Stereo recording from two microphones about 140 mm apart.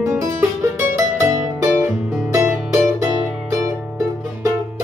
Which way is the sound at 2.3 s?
20° right (ahead or behind).